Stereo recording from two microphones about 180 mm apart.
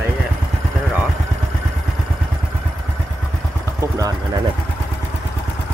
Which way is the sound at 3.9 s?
20° right (ahead or behind).